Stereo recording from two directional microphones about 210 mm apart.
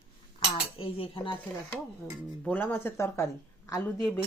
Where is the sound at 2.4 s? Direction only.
10° left (ahead or behind).